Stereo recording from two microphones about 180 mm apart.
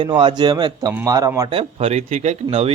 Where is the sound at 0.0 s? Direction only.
25° right (ahead or behind).